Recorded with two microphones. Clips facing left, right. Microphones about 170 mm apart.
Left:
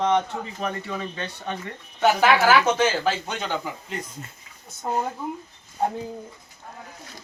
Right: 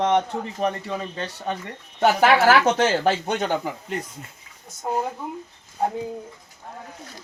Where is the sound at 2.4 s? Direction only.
55° right (ahead or behind).